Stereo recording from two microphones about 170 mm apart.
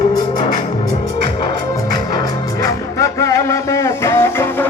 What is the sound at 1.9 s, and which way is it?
Music, 25° left (ahead or behind).